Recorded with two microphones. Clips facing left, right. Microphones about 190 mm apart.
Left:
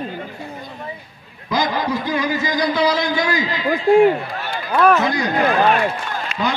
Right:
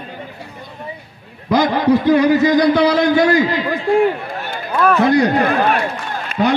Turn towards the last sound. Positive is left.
turn(degrees=-65)  # may be behind; listen again after turning